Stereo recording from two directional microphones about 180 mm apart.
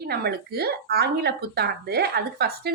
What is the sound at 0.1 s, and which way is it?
Speech, 60° right (ahead or behind).